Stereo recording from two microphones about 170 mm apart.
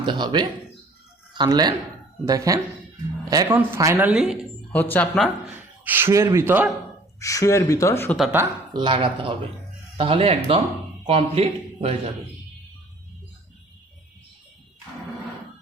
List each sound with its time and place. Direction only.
0.0 s speech: 25° right (ahead or behind); by 4.4 s 5° right (ahead or behind)
4.7 s speech: 10° left (ahead or behind)
5.2 s speech: 10° right (ahead or behind)
7.2 s speech: 20° left (ahead or behind)
8.7 s a man's voice: 30° right (ahead or behind)